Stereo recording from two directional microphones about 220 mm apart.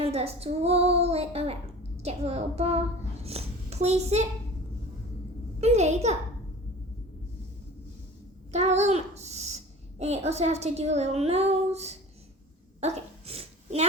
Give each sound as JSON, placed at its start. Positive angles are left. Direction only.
{"t": 0.0, "sound": "a child's voice", "side_deg": -30}
{"t": 5.5, "sound": "a child's voice", "side_deg": -30}
{"t": 8.5, "sound": "a child's voice", "side_deg": -30}
{"t": 12.8, "sound": "dog", "side_deg": -25}